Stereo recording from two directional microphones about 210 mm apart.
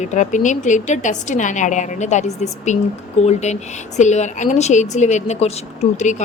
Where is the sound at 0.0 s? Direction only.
35° left (ahead or behind).